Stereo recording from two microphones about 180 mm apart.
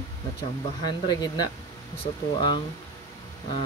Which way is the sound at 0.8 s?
20° left (ahead or behind).